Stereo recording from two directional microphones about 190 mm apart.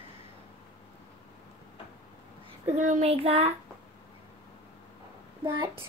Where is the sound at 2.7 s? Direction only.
40° right (ahead or behind).